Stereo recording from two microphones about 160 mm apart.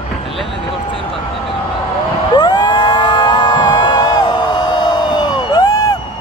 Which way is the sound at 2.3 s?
30° left (ahead or behind).